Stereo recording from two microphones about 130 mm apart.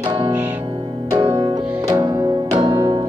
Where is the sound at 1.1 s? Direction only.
25° right (ahead or behind).